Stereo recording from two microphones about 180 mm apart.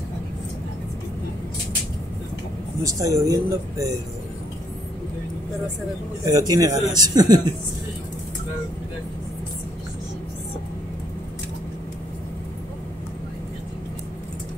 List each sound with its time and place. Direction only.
2.8 s a man's voice: 20° right (ahead or behind)
6.2 s a man's voice: 20° right (ahead or behind)